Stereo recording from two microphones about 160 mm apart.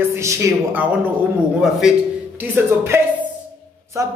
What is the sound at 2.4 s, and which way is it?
Speech, 15° right (ahead or behind).